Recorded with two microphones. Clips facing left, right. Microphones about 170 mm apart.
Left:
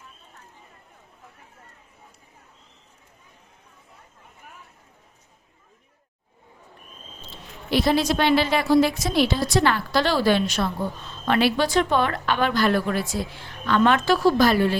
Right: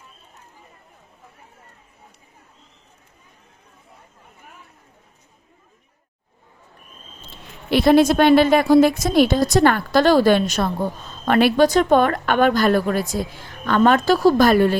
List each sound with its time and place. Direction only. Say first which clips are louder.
7.3 s speech: right 4 dB; 55° right (ahead or behind)